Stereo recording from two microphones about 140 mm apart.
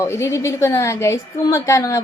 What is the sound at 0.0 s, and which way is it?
A woman's voice, 20° left (ahead or behind).